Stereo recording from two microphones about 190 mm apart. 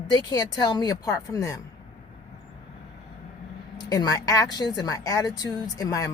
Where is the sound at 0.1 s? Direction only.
20° left (ahead or behind).